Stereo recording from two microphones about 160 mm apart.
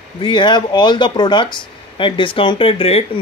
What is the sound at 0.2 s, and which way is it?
Speech, 30° left (ahead or behind).